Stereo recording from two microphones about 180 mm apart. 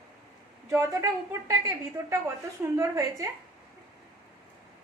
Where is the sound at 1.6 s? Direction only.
15° right (ahead or behind).